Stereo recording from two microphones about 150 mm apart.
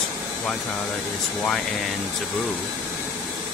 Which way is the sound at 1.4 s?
5° left (ahead or behind).